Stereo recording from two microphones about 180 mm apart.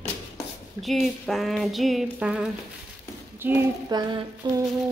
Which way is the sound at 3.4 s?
10° right (ahead or behind).